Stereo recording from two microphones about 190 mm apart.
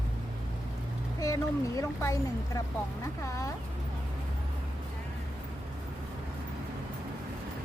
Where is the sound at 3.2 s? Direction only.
15° left (ahead or behind).